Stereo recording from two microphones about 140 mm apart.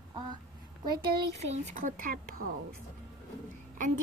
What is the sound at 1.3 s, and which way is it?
A woman's voice, 65° right (ahead or behind).